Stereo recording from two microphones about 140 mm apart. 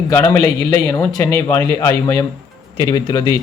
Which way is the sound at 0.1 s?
15° left (ahead or behind).